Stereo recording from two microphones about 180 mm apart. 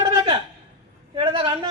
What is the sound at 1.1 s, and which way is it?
Speech, 30° right (ahead or behind).